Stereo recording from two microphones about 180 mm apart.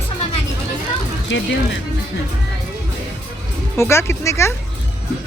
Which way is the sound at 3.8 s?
15° left (ahead or behind).